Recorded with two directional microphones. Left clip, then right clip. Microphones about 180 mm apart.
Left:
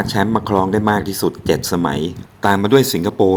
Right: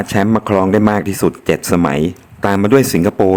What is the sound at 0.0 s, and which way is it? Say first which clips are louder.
Speech: right 2 dB; 30° right (ahead or behind).